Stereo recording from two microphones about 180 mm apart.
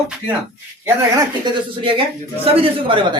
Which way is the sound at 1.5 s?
30° right (ahead or behind).